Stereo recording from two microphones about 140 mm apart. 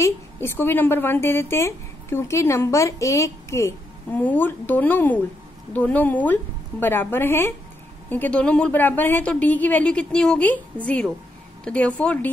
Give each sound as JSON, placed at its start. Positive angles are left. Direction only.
{"t": 0.0, "sound": "a woman's voice", "side_deg": 15}